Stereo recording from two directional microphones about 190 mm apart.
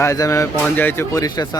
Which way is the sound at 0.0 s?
15° left (ahead or behind).